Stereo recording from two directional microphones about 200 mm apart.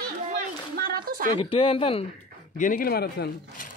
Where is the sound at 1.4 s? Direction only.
25° left (ahead or behind).